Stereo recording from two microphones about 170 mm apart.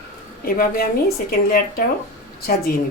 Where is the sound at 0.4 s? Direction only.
60° left (ahead or behind).